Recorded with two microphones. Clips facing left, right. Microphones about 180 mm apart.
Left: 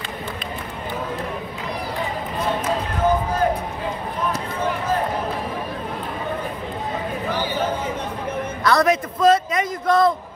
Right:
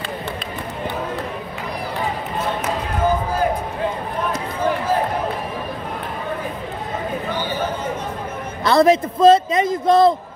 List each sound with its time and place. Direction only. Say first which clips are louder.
8.6 s a man's voice: right 4 dB; 25° right (ahead or behind)